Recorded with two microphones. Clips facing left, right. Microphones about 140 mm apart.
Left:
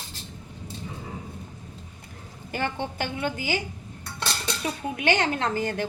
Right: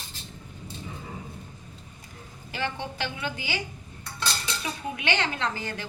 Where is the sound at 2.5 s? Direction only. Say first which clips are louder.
Left 3 dB; 50° left (ahead or behind).